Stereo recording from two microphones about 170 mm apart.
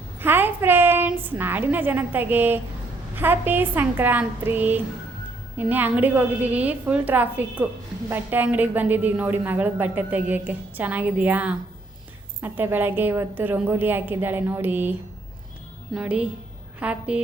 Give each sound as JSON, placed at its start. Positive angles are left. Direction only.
{"t": 0.2, "sound": "a woman's voice", "side_deg": -10}
{"t": 16.0, "sound": "a woman's voice", "side_deg": -5}